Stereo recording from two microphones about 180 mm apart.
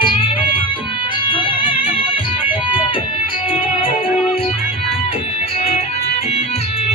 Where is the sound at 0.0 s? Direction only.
30° left (ahead or behind).